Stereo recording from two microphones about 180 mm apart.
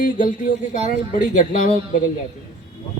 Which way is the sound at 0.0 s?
50° left (ahead or behind).